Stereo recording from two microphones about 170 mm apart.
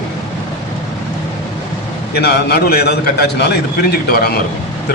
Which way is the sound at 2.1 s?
70° left (ahead or behind).